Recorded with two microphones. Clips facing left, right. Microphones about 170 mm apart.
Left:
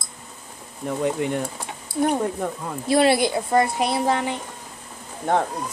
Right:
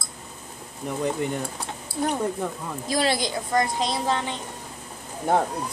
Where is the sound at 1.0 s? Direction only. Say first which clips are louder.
Left 2 dB; 5° left (ahead or behind).